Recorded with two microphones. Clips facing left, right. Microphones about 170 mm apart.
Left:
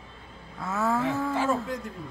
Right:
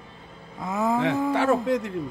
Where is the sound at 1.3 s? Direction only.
70° right (ahead or behind).